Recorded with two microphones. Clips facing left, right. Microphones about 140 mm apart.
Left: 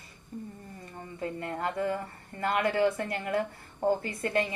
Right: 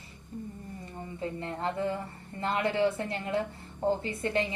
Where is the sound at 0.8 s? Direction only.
25° right (ahead or behind).